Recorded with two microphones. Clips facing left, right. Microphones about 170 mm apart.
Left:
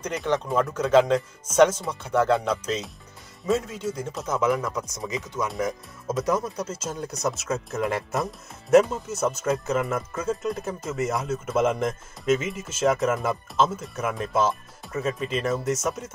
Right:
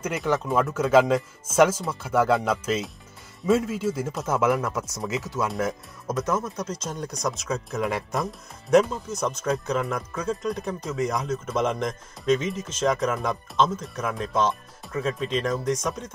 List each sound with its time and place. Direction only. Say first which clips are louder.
0.0 s speech: right 1 dB; 5° right (ahead or behind)
6.0 s speech: left 2 dB; 30° left (ahead or behind)
6.7 s speech: even; 5° left (ahead or behind)